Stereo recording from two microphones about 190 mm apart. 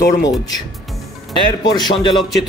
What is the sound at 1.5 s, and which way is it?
Speech, 20° left (ahead or behind).